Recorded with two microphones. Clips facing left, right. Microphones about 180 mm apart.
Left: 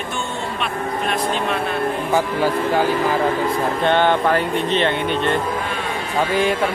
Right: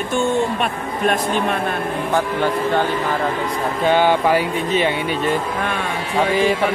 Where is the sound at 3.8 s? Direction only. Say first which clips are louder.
Right 2 dB; 5° right (ahead or behind).